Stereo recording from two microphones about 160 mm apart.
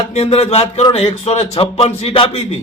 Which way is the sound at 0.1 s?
40° left (ahead or behind).